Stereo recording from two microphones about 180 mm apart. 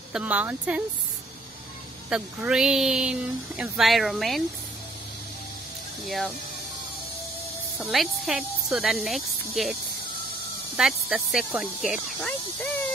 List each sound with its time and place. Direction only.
0.1 s speech: 10° right (ahead or behind)
2.0 s speech: 5° right (ahead or behind)
6.0 s speech: centre (ahead or behind)
7.8 s speech: centre (ahead or behind)
10.8 s speech: 5° right (ahead or behind)